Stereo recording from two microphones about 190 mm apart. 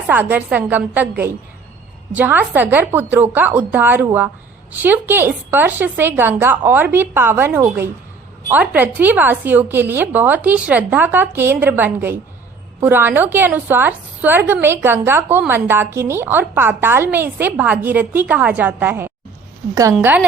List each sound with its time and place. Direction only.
0.1 s a woman's voice: 10° right (ahead or behind)